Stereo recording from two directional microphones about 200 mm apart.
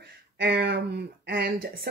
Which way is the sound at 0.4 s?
55° right (ahead or behind).